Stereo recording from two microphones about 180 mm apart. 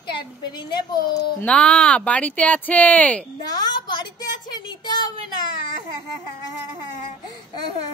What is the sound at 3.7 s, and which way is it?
A woman's voice, 25° left (ahead or behind).